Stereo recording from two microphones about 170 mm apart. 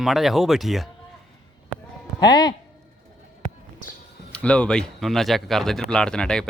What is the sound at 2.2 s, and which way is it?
Speech, 25° left (ahead or behind).